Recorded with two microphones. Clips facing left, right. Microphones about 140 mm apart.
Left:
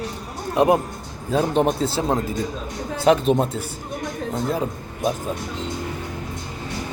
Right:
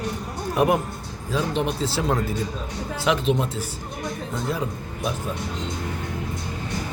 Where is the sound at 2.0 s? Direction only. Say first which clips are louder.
Left 2 dB; 30° left (ahead or behind).